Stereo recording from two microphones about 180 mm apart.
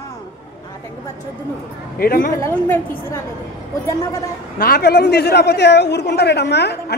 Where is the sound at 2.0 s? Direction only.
55° left (ahead or behind).